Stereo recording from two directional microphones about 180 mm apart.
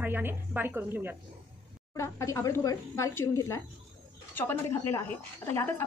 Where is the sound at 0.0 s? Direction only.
10° right (ahead or behind).